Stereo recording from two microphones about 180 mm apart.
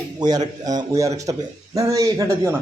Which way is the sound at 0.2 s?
20° right (ahead or behind).